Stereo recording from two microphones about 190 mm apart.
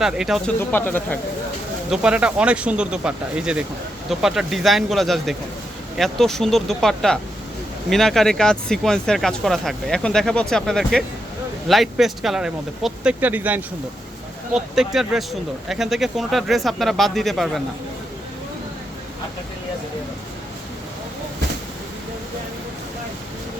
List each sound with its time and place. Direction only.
0.0 s speech: centre (ahead or behind)
0.6 s speech: 10° left (ahead or behind)
1.9 s speech: 5° right (ahead or behind)